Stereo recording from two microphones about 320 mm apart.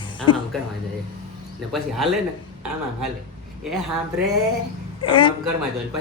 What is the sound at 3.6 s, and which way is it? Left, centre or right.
Speech, centre.